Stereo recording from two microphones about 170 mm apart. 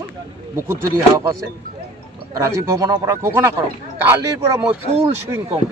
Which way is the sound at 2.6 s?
20° right (ahead or behind).